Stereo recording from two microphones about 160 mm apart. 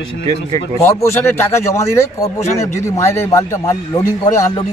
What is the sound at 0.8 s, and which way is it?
Speech, 15° left (ahead or behind).